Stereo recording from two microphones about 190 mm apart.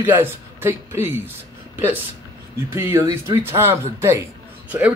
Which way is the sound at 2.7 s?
15° right (ahead or behind).